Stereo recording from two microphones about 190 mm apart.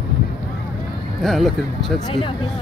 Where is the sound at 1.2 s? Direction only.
Centre (ahead or behind).